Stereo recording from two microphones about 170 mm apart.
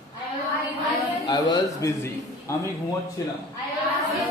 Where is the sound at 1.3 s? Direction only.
20° left (ahead or behind).